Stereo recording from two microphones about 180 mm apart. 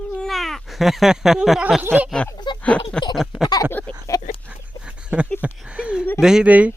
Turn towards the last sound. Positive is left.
turn(degrees=-5)  # may be behind; listen again after turning